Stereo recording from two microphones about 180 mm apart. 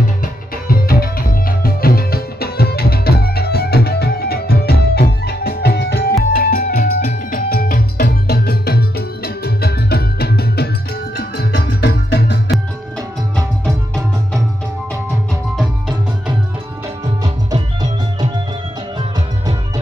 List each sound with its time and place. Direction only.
0.2 s tabla: 55° left (ahead or behind)
6.3 s music: 55° left (ahead or behind)
13.7 s music: centre (ahead or behind)